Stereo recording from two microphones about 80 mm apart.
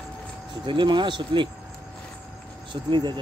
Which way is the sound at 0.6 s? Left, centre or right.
Right.